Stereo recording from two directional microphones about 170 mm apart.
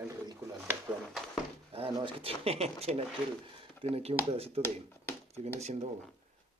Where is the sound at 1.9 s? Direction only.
30° right (ahead or behind).